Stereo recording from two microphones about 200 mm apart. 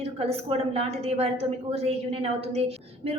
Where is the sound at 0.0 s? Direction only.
30° right (ahead or behind).